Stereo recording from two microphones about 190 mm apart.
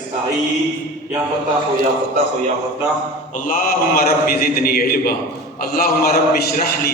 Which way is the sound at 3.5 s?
50° left (ahead or behind).